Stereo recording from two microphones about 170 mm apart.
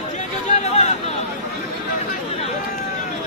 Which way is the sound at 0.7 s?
40° left (ahead or behind).